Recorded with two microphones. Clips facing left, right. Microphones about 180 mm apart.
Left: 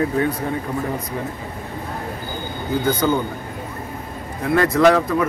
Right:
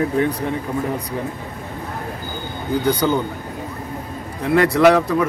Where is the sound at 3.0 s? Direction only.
15° right (ahead or behind).